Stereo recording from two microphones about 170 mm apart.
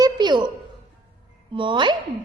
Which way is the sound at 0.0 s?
25° right (ahead or behind).